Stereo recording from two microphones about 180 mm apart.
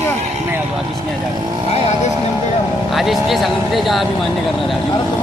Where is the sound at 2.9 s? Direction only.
Centre (ahead or behind).